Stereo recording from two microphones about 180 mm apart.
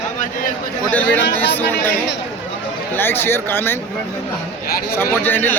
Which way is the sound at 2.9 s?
10° left (ahead or behind).